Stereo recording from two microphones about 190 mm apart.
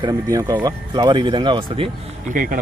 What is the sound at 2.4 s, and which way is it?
Speech, 45° right (ahead or behind).